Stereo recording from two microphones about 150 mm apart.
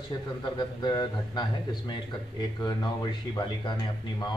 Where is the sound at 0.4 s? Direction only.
25° left (ahead or behind).